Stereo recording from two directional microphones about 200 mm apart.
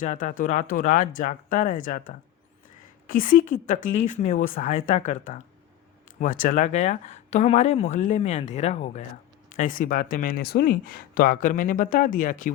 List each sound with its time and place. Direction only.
0.0 s speech: 40° left (ahead or behind)